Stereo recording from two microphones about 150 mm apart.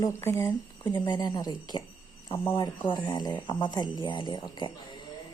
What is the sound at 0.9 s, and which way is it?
Speech, 30° left (ahead or behind).